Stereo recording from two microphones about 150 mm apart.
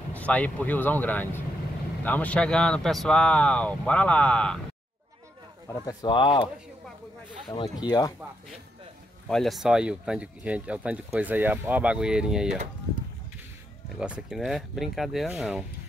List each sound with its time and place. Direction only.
0.1 s speech: 10° left (ahead or behind)
5.7 s speech: 25° left (ahead or behind)
7.8 s speech: 25° left (ahead or behind)
9.3 s speech: centre (ahead or behind)
13.9 s speech: 5° right (ahead or behind)